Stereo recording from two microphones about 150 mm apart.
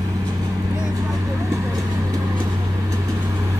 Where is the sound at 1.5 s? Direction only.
25° right (ahead or behind).